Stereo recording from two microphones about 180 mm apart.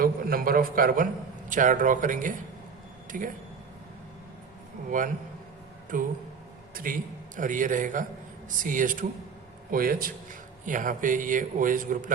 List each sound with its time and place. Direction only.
0.0 s a man's voice: 55° right (ahead or behind)
4.9 s a man's voice: 50° right (ahead or behind)